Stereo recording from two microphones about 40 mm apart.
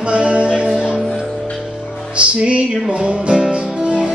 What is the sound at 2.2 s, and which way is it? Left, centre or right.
Music, right.